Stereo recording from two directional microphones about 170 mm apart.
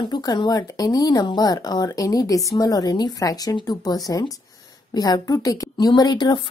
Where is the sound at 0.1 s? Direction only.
25° left (ahead or behind).